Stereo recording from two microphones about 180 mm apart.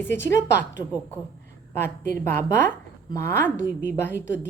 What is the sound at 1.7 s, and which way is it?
A woman's voice, 10° left (ahead or behind).